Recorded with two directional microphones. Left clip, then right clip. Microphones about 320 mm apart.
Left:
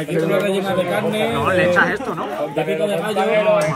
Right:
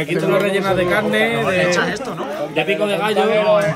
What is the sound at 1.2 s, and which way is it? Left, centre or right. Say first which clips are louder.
Speech: even; centre.